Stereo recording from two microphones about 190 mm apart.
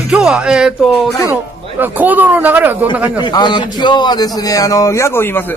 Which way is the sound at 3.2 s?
25° left (ahead or behind).